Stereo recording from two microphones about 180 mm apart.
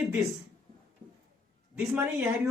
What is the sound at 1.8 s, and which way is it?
Speech, 10° right (ahead or behind).